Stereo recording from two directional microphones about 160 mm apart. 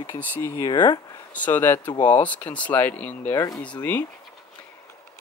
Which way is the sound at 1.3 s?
10° left (ahead or behind).